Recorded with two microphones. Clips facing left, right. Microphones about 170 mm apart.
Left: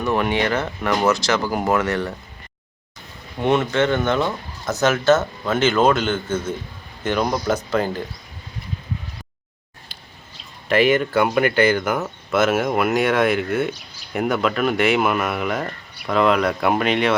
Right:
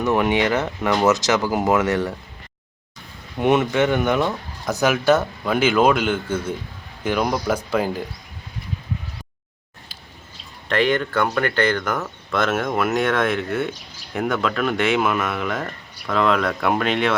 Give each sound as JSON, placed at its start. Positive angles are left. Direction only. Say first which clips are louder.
{"t": 0.0, "sound": "speech", "louder": "right 2 dB", "side_deg": -15}
{"t": 3.4, "sound": "speech", "louder": "right 1 dB", "side_deg": -20}
{"t": 10.7, "sound": "speech", "louder": "left 3 dB", "side_deg": 10}